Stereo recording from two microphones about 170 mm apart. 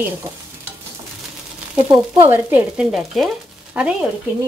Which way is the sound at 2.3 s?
5° right (ahead or behind).